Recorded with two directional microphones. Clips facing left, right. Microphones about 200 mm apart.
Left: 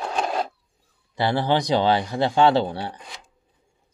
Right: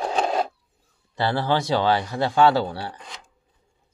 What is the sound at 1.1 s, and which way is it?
A man's voice, 15° left (ahead or behind).